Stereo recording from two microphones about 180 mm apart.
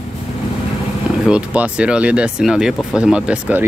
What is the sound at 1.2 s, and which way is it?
Speech, 5° right (ahead or behind).